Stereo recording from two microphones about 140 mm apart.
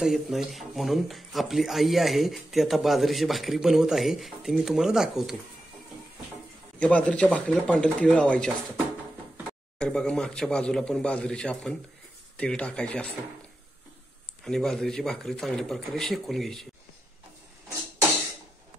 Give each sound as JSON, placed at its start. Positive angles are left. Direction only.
{"t": 0.0, "sound": "speech", "side_deg": 0}
{"t": 6.8, "sound": "speech", "side_deg": 10}
{"t": 9.8, "sound": "speech", "side_deg": 5}
{"t": 14.4, "sound": "speech", "side_deg": 5}